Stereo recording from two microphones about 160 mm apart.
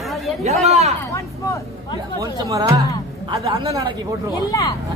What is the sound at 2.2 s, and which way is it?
Speech, 20° right (ahead or behind).